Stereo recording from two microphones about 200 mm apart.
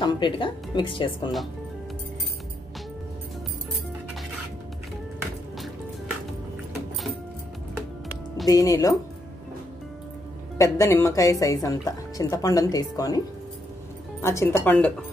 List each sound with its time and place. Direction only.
0.0 s speech: 25° left (ahead or behind)
8.5 s speech: 15° left (ahead or behind)
10.6 s speech: 15° left (ahead or behind)
14.2 s speech: 15° left (ahead or behind)